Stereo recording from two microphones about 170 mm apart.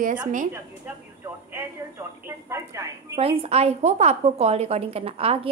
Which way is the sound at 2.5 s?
15° right (ahead or behind).